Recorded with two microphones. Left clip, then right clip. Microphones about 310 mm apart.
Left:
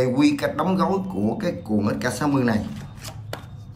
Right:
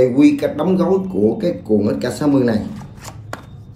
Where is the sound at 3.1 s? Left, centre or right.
Centre.